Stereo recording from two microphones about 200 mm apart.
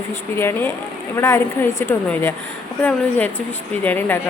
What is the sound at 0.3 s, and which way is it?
A woman's voice, 10° left (ahead or behind).